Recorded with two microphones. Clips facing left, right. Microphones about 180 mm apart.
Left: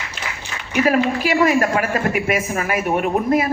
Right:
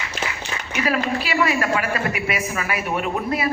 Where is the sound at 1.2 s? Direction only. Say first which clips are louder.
Left 5 dB; 45° left (ahead or behind).